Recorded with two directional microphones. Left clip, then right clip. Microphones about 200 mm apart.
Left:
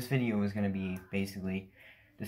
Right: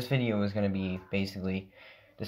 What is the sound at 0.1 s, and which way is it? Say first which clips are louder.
Speech: right 3 dB; 45° right (ahead or behind).